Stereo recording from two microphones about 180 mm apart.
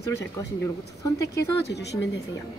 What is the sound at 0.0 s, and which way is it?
A man's voice, 15° left (ahead or behind).